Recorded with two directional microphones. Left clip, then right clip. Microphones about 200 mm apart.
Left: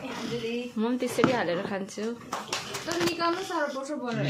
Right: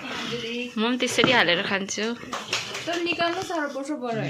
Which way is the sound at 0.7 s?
Centre (ahead or behind).